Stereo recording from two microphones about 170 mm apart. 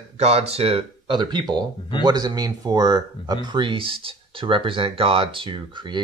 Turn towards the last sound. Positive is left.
turn(degrees=-25)  # may be behind; listen again after turning